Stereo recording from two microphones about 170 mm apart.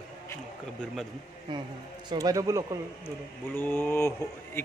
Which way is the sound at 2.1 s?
20° right (ahead or behind).